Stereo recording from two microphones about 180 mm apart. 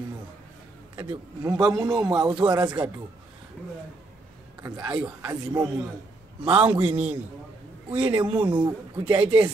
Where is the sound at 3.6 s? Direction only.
10° left (ahead or behind).